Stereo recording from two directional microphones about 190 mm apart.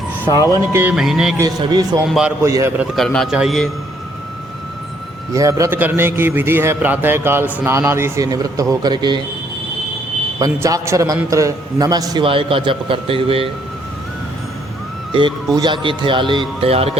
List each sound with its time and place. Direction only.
0.3 s speech: 20° left (ahead or behind)
0.7 s a man's voice: 10° right (ahead or behind)
0.9 s a man's voice: centre (ahead or behind)
1.4 s a man's voice: 20° right (ahead or behind)
2.0 s a man's voice: centre (ahead or behind)
2.4 s a man's voice: 15° right (ahead or behind)
2.9 s a man's voice: centre (ahead or behind)
5.3 s a man's voice: 15° right (ahead or behind)
10.4 s a man's voice: 15° right (ahead or behind)
15.1 s a man's voice: 25° right (ahead or behind)